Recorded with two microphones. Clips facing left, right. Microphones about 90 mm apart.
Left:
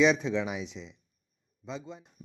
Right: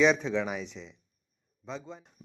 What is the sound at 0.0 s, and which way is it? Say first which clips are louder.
A man's voice: even; centre (ahead or behind).